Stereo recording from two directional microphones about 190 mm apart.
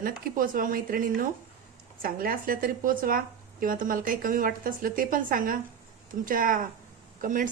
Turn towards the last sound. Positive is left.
turn(degrees=-45)  # may be behind; listen again after turning